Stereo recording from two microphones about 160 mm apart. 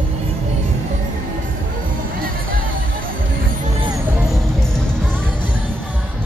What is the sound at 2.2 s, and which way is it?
Music, 60° right (ahead or behind).